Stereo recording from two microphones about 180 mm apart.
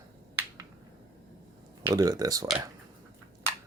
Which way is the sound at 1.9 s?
20° right (ahead or behind).